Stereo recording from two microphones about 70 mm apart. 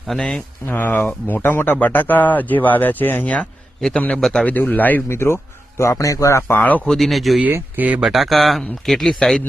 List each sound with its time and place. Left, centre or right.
0.2 s a man's voice: centre
0.7 s speech: left
3.9 s a man's voice: centre
4.2 s a man's voice: centre
4.4 s speech: left
5.0 s a man's voice: left
6.6 s speech: left
6.8 s speech: centre
7.8 s speech: right
8.0 s speech: centre